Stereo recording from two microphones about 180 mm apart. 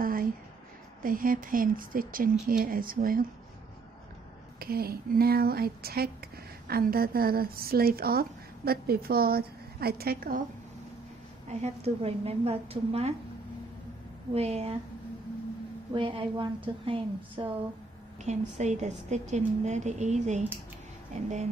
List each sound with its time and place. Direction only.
0.0 s a sound: 50° right (ahead or behind)
1.0 s speech: 50° right (ahead or behind)
4.6 s speech: 60° right (ahead or behind)
11.4 s a woman's voice: 35° right (ahead or behind)
14.3 s a woman's voice: 35° right (ahead or behind)
15.9 s a woman's voice: 30° right (ahead or behind)
18.2 s a woman's voice: 40° right (ahead or behind)